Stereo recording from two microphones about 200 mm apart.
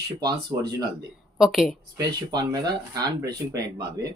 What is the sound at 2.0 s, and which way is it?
Speech, 20° right (ahead or behind).